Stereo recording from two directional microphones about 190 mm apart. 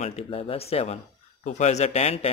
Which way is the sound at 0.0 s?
35° left (ahead or behind).